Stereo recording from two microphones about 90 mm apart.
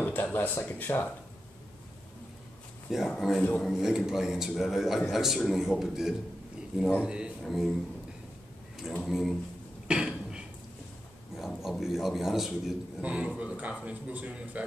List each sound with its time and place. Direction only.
0.0 s speech: 20° left (ahead or behind)
2.9 s a man's voice: centre (ahead or behind)
9.0 s a man's voice: centre (ahead or behind)
9.8 s cough: 10° right (ahead or behind)
11.3 s a man's voice: centre (ahead or behind)